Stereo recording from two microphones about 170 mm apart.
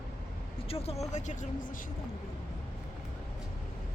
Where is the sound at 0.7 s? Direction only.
35° left (ahead or behind).